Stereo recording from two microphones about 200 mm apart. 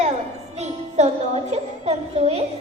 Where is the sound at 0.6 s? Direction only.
35° right (ahead or behind).